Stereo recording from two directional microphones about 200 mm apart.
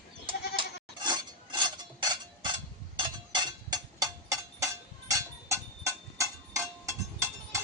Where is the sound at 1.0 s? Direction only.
20° right (ahead or behind).